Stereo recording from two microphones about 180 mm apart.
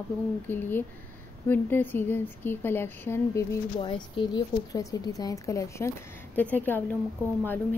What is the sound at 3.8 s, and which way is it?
Speech, 30° left (ahead or behind).